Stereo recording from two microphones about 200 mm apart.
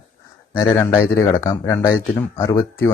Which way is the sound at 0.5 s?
15° left (ahead or behind).